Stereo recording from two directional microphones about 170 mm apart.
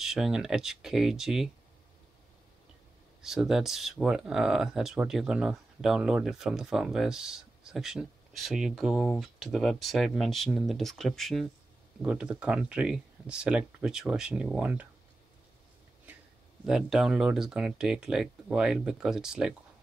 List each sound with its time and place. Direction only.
0.0 s speech: centre (ahead or behind)
3.2 s speech: centre (ahead or behind)
16.6 s speech: centre (ahead or behind)